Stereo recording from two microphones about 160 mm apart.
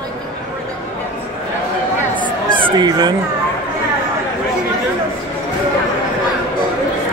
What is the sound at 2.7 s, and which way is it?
Speech, 25° right (ahead or behind).